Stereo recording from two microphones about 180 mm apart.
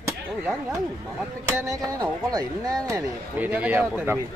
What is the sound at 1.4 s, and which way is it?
Speech, 15° right (ahead or behind).